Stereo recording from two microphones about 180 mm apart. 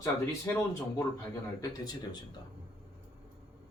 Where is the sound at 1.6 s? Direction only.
20° left (ahead or behind).